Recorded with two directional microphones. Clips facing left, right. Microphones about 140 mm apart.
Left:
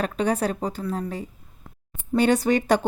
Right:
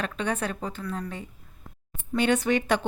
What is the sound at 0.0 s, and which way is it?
Speech, 40° left (ahead or behind).